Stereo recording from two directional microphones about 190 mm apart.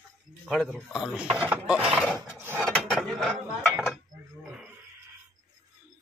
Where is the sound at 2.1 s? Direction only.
10° right (ahead or behind).